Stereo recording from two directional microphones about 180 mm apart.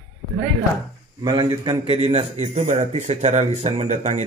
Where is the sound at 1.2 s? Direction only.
25° right (ahead or behind).